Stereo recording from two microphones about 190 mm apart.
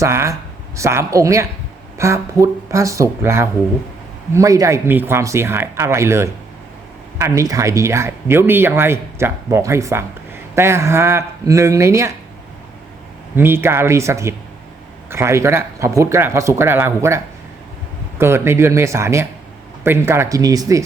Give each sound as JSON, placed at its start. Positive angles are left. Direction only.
{"t": 0.0, "sound": "speech", "side_deg": -15}
{"t": 13.3, "sound": "speech", "side_deg": -10}
{"t": 18.2, "sound": "speech", "side_deg": -15}